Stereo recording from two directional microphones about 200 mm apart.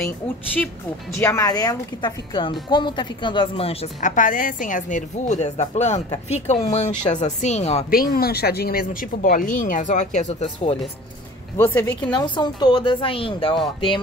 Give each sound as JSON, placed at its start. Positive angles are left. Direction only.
{"t": 0.0, "sound": "speech", "side_deg": 10}
{"t": 11.5, "sound": "speech", "side_deg": 10}
{"t": 12.1, "sound": "speech", "side_deg": 20}